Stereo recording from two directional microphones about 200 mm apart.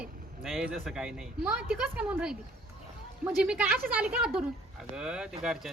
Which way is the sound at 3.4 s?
5° right (ahead or behind).